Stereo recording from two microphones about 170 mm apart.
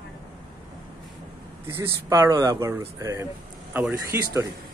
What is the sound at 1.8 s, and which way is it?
Speech, 15° right (ahead or behind).